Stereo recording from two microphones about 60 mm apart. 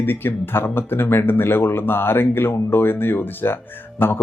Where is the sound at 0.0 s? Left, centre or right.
Left.